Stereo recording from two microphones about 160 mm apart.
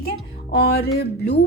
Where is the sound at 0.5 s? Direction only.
85° left.